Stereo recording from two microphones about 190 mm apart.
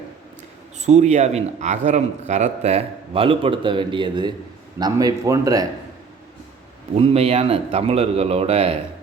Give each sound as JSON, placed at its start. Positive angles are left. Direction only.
{"t": 0.9, "sound": "a man's voice", "side_deg": -35}
{"t": 7.0, "sound": "a man's voice", "side_deg": -30}